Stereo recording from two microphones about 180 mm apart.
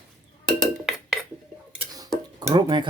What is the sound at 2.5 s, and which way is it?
Dishes, 25° right (ahead or behind).